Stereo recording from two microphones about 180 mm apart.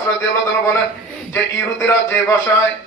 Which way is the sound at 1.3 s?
15° left (ahead or behind).